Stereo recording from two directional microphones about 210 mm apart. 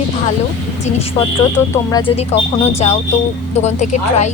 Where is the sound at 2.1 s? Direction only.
30° left (ahead or behind).